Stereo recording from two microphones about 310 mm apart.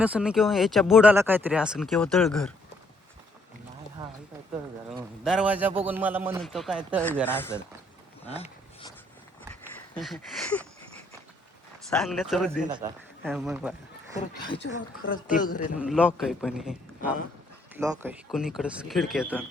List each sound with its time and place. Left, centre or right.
0.0 s speech: centre
5.2 s speech: centre
8.3 s a sound: centre
9.9 s speech: centre
11.9 s speech: centre
12.5 s a man's voice: right
13.2 s speech: centre
15.0 s speech: left
15.8 s speech: centre